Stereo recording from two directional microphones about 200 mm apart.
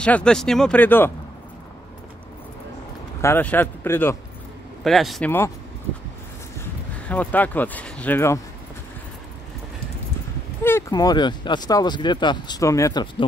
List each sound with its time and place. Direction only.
0.0 s speech: 5° left (ahead or behind)
3.2 s speech: 10° left (ahead or behind)
4.8 s speech: centre (ahead or behind)
6.6 s speech: 10° left (ahead or behind)
10.6 s speech: 15° left (ahead or behind)